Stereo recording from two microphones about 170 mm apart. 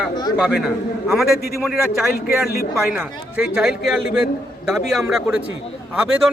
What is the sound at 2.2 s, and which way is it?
Speech, 60° left (ahead or behind).